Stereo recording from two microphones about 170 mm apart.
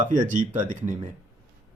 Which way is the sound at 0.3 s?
50° right (ahead or behind).